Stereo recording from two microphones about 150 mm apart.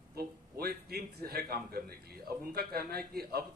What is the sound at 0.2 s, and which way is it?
A man's voice, 90° right.